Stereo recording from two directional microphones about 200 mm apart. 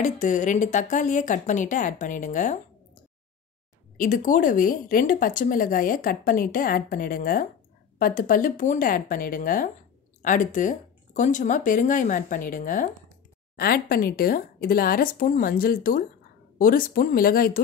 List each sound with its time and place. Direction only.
0.0 s speech: 40° left (ahead or behind)
3.9 s a woman's voice: 40° left (ahead or behind)